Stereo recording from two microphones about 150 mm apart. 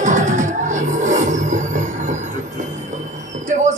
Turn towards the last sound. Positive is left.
turn(degrees=-55)  # may be behind; listen again after turning